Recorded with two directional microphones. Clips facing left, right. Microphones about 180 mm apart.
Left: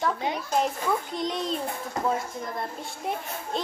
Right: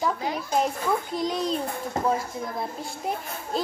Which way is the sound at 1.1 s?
Centre (ahead or behind).